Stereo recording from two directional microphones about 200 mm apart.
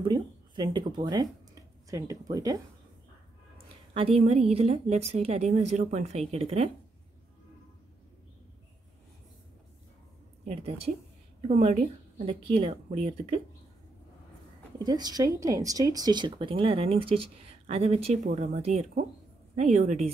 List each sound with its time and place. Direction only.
0.0 s a sound: 20° right (ahead or behind)
3.5 s a woman's voice: 30° right (ahead or behind)
10.4 s a woman's voice: 30° right (ahead or behind)
14.8 s a woman's voice: 20° right (ahead or behind); by 20.1 s 35° right (ahead or behind)